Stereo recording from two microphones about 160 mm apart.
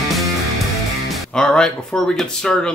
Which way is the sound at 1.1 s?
5° left (ahead or behind).